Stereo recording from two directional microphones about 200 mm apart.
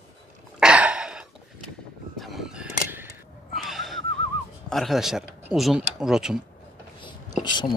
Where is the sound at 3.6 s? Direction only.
Centre (ahead or behind).